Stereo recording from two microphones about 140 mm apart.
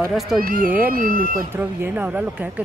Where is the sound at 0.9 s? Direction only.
90° right.